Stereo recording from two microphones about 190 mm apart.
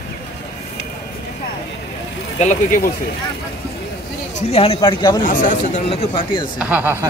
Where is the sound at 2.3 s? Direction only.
40° left (ahead or behind).